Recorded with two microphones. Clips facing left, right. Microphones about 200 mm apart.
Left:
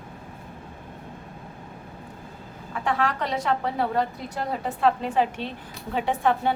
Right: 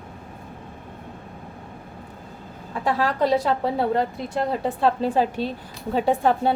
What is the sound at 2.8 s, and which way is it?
Speech, 35° right (ahead or behind).